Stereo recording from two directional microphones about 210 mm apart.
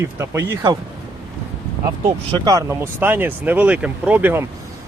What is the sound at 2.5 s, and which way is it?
Speech, 15° right (ahead or behind).